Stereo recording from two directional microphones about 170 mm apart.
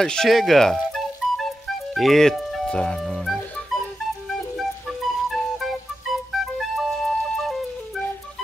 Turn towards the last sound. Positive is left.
turn(degrees=0)  # may be behind; listen again after turning